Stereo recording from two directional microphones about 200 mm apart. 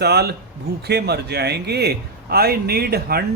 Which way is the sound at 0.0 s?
55° right (ahead or behind).